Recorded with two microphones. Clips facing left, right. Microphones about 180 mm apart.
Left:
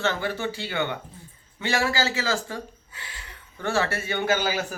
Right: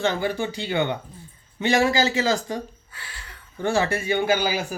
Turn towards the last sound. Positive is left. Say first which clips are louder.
# right 2 dB
turn(degrees=-10)  # may be behind; listen again after turning